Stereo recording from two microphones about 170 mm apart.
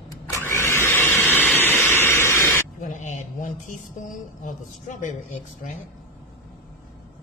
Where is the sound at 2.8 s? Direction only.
45° left (ahead or behind).